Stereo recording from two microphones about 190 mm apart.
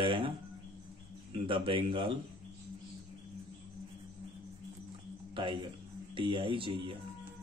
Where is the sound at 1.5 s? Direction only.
25° right (ahead or behind).